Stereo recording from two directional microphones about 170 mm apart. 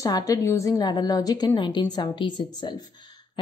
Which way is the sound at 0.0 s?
20° left (ahead or behind).